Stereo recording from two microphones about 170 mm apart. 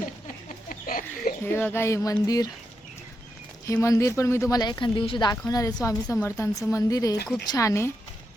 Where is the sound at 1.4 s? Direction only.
10° left (ahead or behind).